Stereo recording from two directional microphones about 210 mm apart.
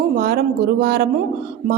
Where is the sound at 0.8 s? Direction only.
55° right (ahead or behind).